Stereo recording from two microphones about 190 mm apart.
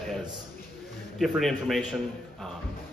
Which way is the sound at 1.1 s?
Centre (ahead or behind).